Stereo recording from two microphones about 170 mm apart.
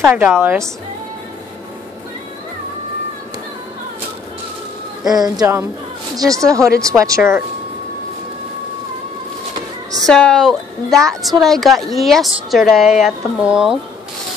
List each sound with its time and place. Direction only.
0.1 s speech: 10° right (ahead or behind)
5.0 s speech: 20° right (ahead or behind)
10.0 s a woman's voice: 5° left (ahead or behind)